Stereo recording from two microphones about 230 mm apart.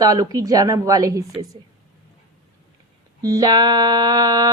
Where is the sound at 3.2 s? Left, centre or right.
Centre.